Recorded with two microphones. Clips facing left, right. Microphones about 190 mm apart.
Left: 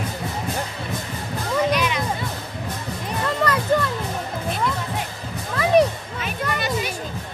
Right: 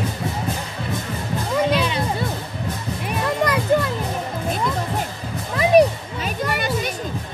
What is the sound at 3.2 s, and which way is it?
Music, 15° right (ahead or behind).